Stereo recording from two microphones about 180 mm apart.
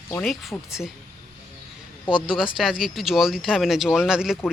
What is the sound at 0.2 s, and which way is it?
Speech, 5° left (ahead or behind).